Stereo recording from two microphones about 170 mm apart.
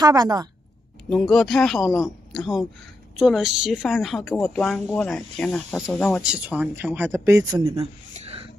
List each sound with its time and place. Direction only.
0.0 s a woman's voice: 20° right (ahead or behind)
1.1 s a woman's voice: centre (ahead or behind)
6.2 s speech: 10° right (ahead or behind)
7.8 s a sound: 40° right (ahead or behind)